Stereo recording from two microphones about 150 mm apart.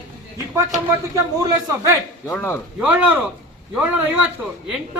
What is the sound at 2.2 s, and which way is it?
Speech, 15° left (ahead or behind).